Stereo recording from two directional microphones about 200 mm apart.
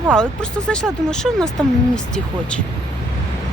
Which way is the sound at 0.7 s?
5° left (ahead or behind).